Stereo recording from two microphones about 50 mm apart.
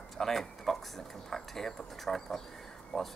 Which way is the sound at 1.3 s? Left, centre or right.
Centre.